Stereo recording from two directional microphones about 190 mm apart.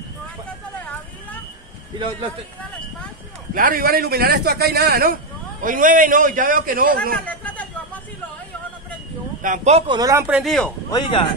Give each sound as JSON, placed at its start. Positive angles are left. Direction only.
{"t": 3.5, "sound": "a man's voice", "side_deg": -45}
{"t": 7.2, "sound": "a sound", "side_deg": 10}
{"t": 9.4, "sound": "speech", "side_deg": -40}
{"t": 9.9, "sound": "speech", "side_deg": -20}
{"t": 10.2, "sound": "speech", "side_deg": 0}
{"t": 10.9, "sound": "speech", "side_deg": 25}